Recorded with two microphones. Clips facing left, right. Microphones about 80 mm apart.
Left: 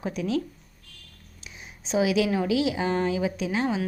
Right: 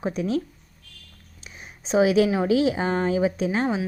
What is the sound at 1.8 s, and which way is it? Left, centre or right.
A woman's voice, right.